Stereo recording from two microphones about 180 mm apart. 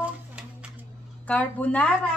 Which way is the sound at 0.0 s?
5° right (ahead or behind).